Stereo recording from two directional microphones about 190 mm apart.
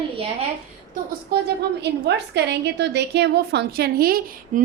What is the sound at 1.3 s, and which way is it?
A woman's voice, 60° right (ahead or behind).